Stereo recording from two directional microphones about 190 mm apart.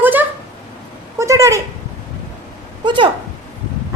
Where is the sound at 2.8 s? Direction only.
25° right (ahead or behind).